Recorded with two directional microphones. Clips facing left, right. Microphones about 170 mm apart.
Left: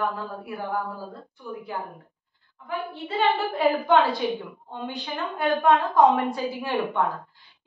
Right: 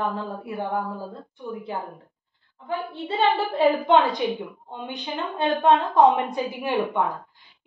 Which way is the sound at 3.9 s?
20° right (ahead or behind).